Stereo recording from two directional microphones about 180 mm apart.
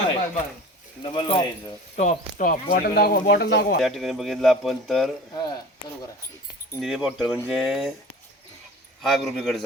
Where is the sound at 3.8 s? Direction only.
Centre (ahead or behind).